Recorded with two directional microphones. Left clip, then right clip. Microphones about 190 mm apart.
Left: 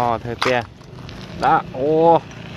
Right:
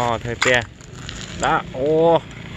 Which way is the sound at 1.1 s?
50° right (ahead or behind).